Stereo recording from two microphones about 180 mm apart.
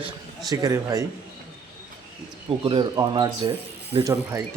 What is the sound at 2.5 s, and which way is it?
Speech, 25° right (ahead or behind).